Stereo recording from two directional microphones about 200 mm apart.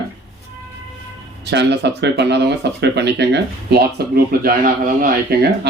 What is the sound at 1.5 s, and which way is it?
Speech, 60° right (ahead or behind).